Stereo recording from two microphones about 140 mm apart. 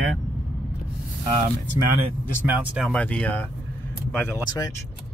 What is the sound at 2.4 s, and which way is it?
Speech, 10° right (ahead or behind).